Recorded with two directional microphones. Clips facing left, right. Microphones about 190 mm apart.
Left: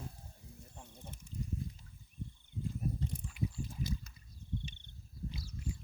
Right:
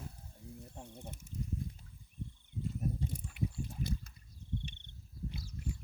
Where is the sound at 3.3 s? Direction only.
60° right (ahead or behind).